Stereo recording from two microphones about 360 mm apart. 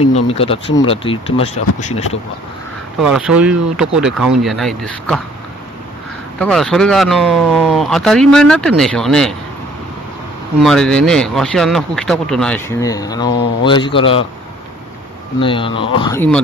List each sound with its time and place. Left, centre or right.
0.1 s speech: centre
3.0 s speech: centre
6.4 s speech: centre
10.6 s speech: centre
15.3 s speech: centre